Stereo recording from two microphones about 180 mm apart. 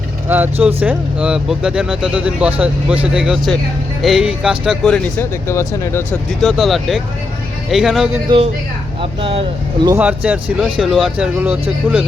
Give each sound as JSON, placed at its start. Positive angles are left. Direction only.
{"t": 0.3, "sound": "speech", "side_deg": -10}
{"t": 5.5, "sound": "speech", "side_deg": 15}
{"t": 6.4, "sound": "speech", "side_deg": 0}
{"t": 9.0, "sound": "speech", "side_deg": -30}
{"t": 9.9, "sound": "speech", "side_deg": -5}